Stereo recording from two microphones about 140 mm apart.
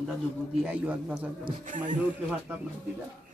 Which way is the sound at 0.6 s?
10° right (ahead or behind).